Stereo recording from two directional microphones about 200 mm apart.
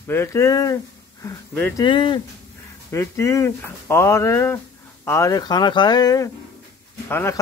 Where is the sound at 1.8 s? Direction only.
25° left (ahead or behind).